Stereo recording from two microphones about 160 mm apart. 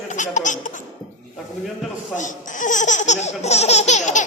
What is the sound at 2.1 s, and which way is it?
Speech, 50° left (ahead or behind).